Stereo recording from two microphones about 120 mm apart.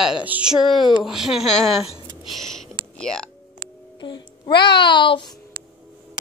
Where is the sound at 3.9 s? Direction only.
40° left (ahead or behind).